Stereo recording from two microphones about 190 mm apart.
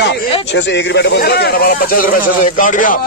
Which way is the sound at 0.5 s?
70° left (ahead or behind).